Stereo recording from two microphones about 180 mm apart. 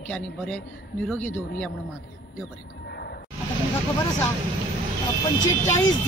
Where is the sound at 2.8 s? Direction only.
65° left (ahead or behind).